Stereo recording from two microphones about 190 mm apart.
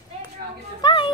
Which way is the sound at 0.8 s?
25° left (ahead or behind).